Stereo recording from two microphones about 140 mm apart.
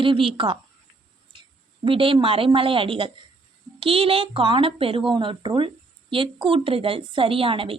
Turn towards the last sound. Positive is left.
turn(degrees=-40)  # may be behind; listen again after turning